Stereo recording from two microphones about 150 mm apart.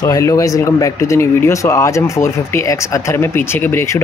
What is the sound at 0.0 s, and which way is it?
Speech, 25° left (ahead or behind).